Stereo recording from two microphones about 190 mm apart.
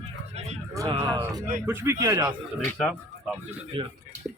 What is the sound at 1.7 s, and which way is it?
Speech, 15° right (ahead or behind).